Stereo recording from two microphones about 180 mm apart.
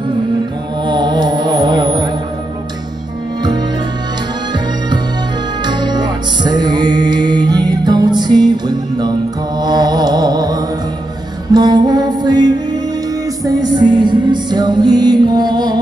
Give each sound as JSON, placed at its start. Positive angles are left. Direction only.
{"t": 0.8, "sound": "music", "side_deg": -25}
{"t": 5.7, "sound": "music", "side_deg": -25}
{"t": 9.6, "sound": "mantra", "side_deg": -20}
{"t": 11.5, "sound": "music", "side_deg": -25}